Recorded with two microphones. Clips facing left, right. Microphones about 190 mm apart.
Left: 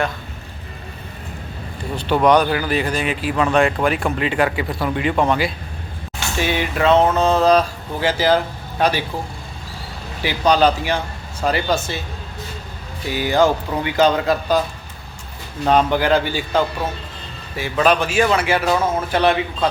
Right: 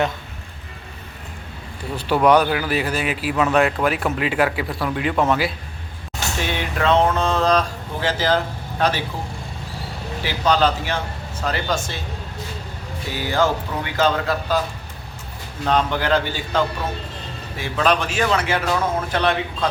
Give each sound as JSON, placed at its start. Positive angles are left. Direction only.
{"t": 2.0, "sound": "speech", "side_deg": -10}
{"t": 10.2, "sound": "speech", "side_deg": 15}
{"t": 13.1, "sound": "speech", "side_deg": 15}
{"t": 15.6, "sound": "speech", "side_deg": 10}